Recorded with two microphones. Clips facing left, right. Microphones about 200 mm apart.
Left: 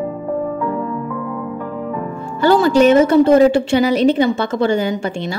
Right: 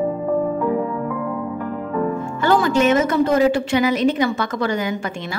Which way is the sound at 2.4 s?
30° left (ahead or behind).